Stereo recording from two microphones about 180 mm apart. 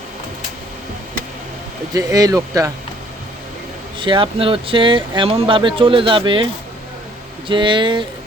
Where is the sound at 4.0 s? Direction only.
30° right (ahead or behind).